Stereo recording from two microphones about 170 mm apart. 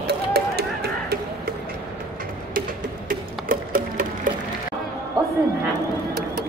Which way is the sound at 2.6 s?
55° right (ahead or behind).